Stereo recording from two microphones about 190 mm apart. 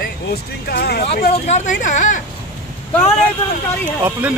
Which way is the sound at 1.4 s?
35° left (ahead or behind).